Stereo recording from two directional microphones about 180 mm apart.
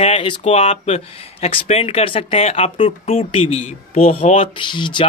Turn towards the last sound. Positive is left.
turn(degrees=25)  # may be behind; listen again after turning